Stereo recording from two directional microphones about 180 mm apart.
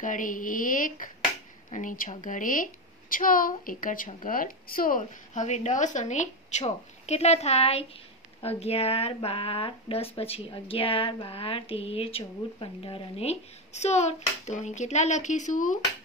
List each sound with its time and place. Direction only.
0.0 s a woman's voice: 45° left (ahead or behind)